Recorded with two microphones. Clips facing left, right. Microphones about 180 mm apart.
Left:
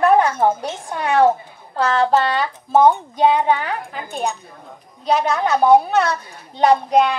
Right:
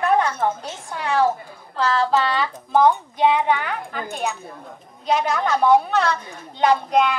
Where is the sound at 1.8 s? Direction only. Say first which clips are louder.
Left 3 dB; 50° left (ahead or behind).